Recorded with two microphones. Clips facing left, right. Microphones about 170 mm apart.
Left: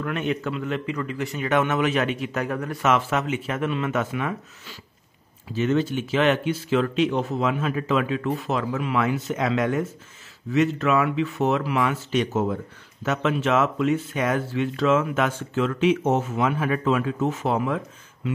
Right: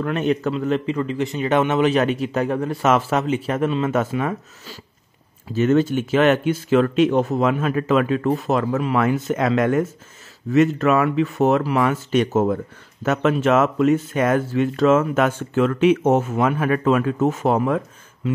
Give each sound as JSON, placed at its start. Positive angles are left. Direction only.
{"t": 0.0, "sound": "a man's voice", "side_deg": -35}